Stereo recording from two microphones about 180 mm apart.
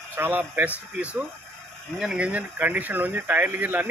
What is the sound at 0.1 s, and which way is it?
A man's voice, 10° right (ahead or behind).